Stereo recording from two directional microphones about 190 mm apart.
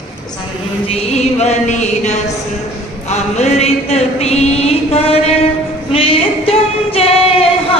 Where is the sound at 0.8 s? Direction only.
35° left (ahead or behind).